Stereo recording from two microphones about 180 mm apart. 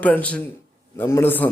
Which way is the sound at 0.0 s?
10° left (ahead or behind).